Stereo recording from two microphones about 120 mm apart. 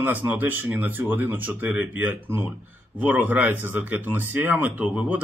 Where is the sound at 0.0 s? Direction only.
15° right (ahead or behind).